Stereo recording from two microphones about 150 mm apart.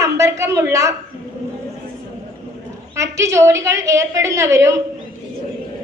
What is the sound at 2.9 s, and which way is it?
A woman's voice, 20° right (ahead or behind).